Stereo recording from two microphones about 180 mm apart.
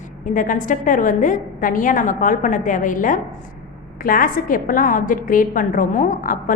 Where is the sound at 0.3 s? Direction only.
45° left (ahead or behind).